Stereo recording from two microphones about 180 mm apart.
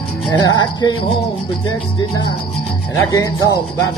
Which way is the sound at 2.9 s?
15° left (ahead or behind).